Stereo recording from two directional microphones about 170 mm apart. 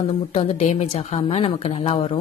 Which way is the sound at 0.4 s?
40° left (ahead or behind).